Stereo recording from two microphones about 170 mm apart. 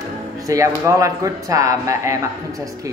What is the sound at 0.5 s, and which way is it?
A woman's voice, 20° right (ahead or behind).